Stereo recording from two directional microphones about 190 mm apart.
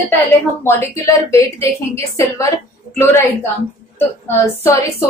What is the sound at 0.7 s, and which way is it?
A woman's voice, 10° left (ahead or behind).